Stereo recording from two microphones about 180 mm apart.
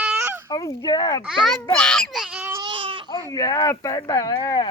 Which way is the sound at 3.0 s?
20° left (ahead or behind).